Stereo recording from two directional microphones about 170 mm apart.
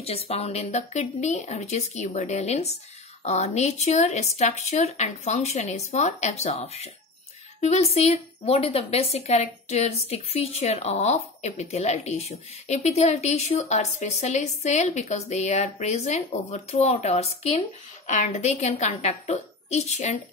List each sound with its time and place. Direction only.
0.0 s a woman's voice: 35° left (ahead or behind)